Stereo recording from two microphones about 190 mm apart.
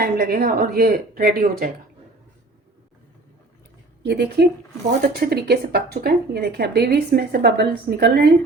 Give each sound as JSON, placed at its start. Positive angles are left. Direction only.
{"t": 0.0, "sound": "speech", "side_deg": -55}
{"t": 4.0, "sound": "speech", "side_deg": -60}